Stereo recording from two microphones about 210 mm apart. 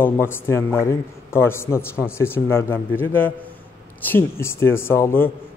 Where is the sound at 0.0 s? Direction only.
10° left (ahead or behind).